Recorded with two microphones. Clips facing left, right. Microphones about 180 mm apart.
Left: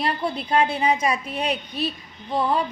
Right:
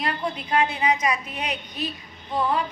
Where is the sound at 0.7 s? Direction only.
30° left (ahead or behind).